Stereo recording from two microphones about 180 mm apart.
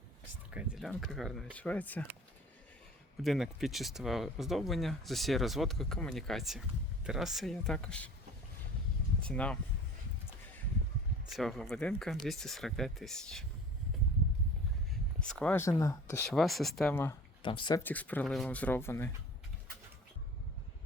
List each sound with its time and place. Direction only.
0.5 s speech: centre (ahead or behind)
3.2 s speech: centre (ahead or behind)
9.2 s speech: 5° left (ahead or behind)
11.3 s speech: centre (ahead or behind)
15.2 s speech: 5° left (ahead or behind)
16.3 s speech: centre (ahead or behind)
16.9 s speech: 15° left (ahead or behind)
17.4 s speech: 25° left (ahead or behind)
17.7 s speech: 10° left (ahead or behind)